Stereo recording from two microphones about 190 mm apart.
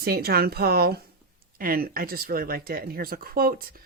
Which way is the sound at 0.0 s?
55° right (ahead or behind).